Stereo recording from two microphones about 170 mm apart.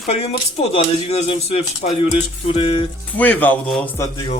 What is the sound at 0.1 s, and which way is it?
Speech, 35° left (ahead or behind).